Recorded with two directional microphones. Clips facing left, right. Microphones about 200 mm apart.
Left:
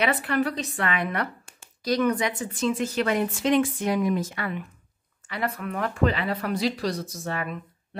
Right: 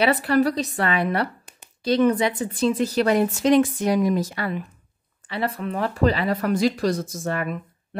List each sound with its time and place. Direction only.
0.0 s speech: 35° right (ahead or behind)
1.4 s a sound: 20° right (ahead or behind)
2.0 s speech: 30° right (ahead or behind); by 7.4 s 50° right (ahead or behind)